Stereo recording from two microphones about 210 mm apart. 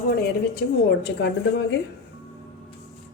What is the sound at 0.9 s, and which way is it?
Speech, 55° left (ahead or behind).